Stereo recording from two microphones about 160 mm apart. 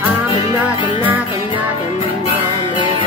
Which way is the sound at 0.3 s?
35° left (ahead or behind).